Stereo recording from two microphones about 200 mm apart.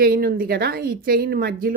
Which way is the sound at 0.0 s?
50° right (ahead or behind).